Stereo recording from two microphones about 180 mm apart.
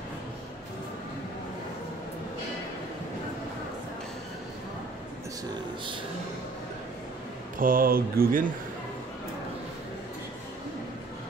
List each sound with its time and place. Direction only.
7.5 s speech: 50° right (ahead or behind)